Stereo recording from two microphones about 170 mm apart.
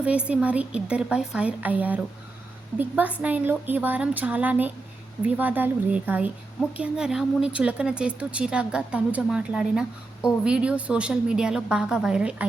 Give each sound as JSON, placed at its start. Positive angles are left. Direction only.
{"t": 0.0, "sound": "a woman's voice", "side_deg": -5}